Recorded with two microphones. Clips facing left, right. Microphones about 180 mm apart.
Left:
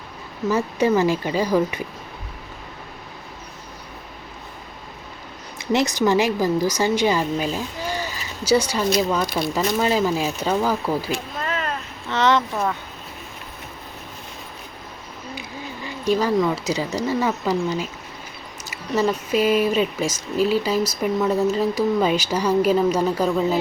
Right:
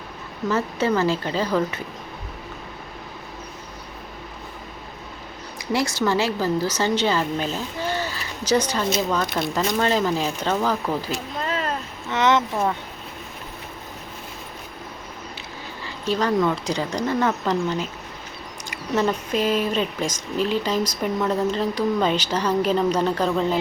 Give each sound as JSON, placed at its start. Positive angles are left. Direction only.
{"t": 0.5, "sound": "speech", "side_deg": 15}
{"t": 5.7, "sound": "speech", "side_deg": 20}
{"t": 11.4, "sound": "a sound", "side_deg": -30}
{"t": 12.1, "sound": "speech", "side_deg": -20}
{"t": 15.4, "sound": "speech", "side_deg": 15}